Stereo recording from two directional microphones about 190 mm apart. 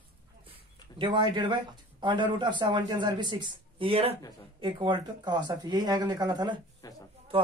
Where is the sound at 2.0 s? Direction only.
25° right (ahead or behind).